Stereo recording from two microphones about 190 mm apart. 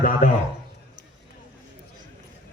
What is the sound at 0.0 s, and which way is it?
Speech, 45° left (ahead or behind).